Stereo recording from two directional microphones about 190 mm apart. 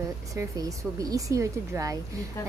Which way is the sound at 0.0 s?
15° right (ahead or behind).